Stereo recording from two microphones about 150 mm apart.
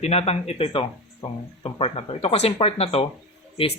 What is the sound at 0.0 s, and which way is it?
Speech, 40° left (ahead or behind).